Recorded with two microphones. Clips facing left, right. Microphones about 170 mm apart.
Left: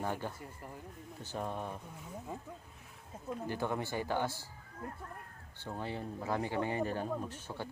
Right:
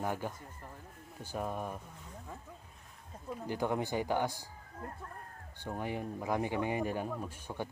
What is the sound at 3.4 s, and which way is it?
Speech, 15° right (ahead or behind).